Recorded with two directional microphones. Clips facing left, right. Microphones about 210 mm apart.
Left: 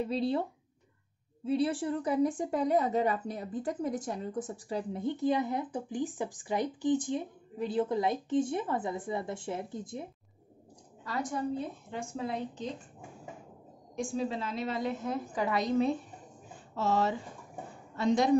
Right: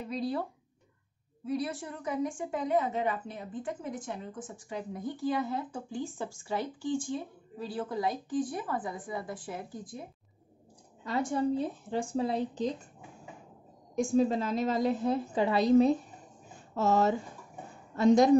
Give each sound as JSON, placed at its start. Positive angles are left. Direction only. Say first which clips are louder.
{"t": 0.0, "sound": "a woman's voice", "louder": "left 3 dB", "side_deg": 30}
{"t": 11.1, "sound": "a woman's voice", "louder": "right 4 dB", "side_deg": -25}
{"t": 13.9, "sound": "a woman's voice", "louder": "right 7 dB", "side_deg": -45}